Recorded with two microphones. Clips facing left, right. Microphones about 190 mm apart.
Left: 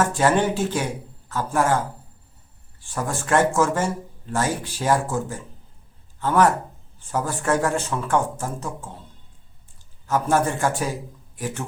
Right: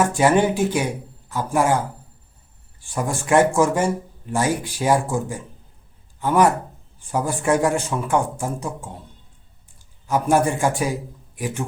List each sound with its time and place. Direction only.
0.0 s speech: 15° right (ahead or behind)
2.8 s a man's voice: 15° right (ahead or behind)
10.1 s speech: 15° right (ahead or behind)